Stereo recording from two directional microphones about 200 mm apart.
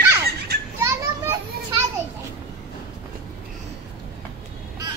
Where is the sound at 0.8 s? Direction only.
10° right (ahead or behind).